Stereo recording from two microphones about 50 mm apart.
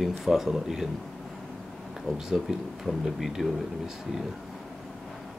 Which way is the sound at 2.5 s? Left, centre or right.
Centre.